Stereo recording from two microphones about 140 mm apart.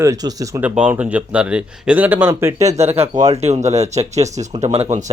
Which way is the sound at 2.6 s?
50° right (ahead or behind).